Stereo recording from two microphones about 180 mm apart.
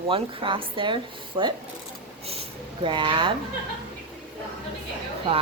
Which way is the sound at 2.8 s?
30° right (ahead or behind).